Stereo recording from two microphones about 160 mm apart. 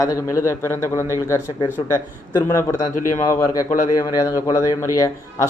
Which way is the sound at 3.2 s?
20° left (ahead or behind).